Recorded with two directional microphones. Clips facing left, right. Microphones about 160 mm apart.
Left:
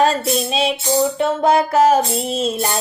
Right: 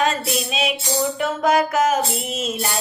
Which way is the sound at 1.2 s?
30° left (ahead or behind).